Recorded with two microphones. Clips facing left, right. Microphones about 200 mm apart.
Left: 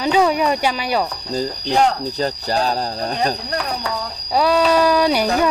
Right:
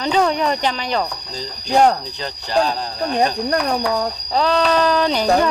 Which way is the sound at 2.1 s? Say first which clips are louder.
Even; 40° left (ahead or behind).